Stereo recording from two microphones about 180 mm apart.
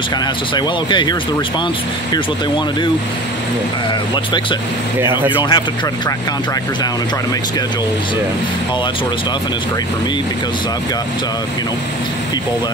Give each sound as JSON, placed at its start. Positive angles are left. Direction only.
{"t": 0.6, "sound": "speech", "side_deg": 25}
{"t": 4.1, "sound": "speech", "side_deg": 25}